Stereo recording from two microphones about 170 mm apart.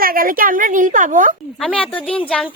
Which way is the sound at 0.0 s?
60° right (ahead or behind).